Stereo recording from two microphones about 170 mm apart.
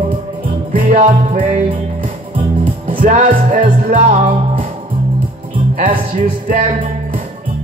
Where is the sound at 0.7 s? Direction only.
50° right (ahead or behind).